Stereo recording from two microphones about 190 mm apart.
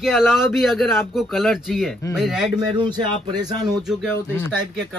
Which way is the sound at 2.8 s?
25° right (ahead or behind).